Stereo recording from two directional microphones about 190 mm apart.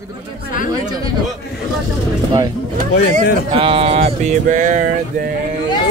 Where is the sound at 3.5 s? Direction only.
30° right (ahead or behind).